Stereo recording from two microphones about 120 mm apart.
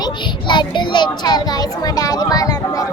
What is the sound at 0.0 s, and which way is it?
A child's voice, 40° left (ahead or behind).